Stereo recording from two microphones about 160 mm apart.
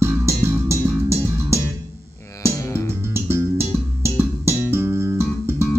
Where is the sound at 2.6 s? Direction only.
20° left (ahead or behind).